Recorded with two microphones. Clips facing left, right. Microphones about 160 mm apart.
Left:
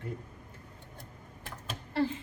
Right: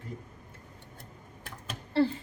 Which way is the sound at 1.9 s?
35° right (ahead or behind).